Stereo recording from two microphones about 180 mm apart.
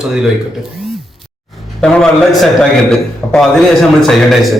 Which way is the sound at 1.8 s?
Centre (ahead or behind).